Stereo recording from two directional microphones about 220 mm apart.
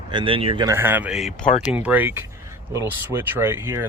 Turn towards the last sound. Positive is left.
turn(degrees=-10)  # may be behind; listen again after turning